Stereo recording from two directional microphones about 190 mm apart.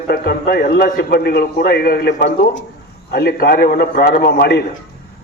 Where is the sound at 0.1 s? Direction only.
55° left (ahead or behind).